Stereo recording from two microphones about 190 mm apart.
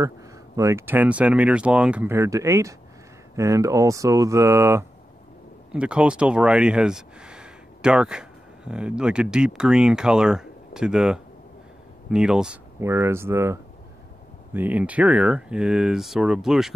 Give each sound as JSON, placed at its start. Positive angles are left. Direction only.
{"t": 0.6, "sound": "speech", "side_deg": -15}